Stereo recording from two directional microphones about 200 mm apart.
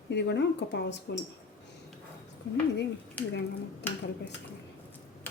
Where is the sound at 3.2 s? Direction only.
5° left (ahead or behind).